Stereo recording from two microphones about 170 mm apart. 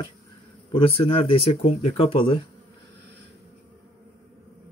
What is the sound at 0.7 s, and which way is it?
Speech, 30° left (ahead or behind).